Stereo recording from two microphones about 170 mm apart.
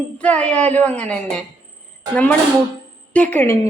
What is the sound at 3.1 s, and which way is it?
Speech, 10° left (ahead or behind).